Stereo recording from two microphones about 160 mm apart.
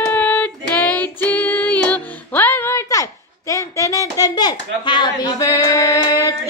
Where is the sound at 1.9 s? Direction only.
10° left (ahead or behind).